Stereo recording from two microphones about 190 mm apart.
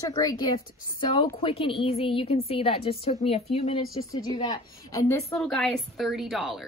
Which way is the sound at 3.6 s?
20° left (ahead or behind).